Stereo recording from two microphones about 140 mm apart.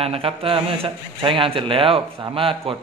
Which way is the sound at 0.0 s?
45° right (ahead or behind).